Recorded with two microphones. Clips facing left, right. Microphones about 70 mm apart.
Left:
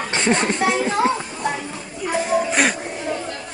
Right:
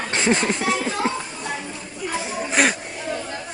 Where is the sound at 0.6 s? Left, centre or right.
Centre.